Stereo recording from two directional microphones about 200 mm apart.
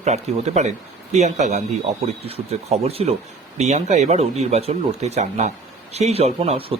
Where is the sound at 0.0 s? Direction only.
35° right (ahead or behind).